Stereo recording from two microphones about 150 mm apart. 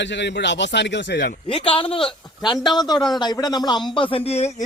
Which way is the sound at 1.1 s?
90° left.